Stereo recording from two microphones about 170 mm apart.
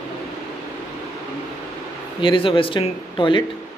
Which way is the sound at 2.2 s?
30° left (ahead or behind).